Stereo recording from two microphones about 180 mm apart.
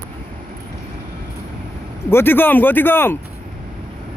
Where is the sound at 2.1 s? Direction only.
10° left (ahead or behind).